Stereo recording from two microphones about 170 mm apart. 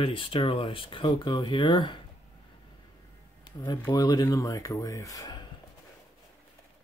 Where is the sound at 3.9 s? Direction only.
20° left (ahead or behind).